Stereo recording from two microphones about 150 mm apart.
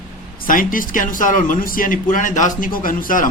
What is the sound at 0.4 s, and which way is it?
A man's voice, 65° left (ahead or behind).